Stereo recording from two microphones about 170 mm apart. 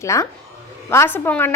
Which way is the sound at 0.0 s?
15° left (ahead or behind).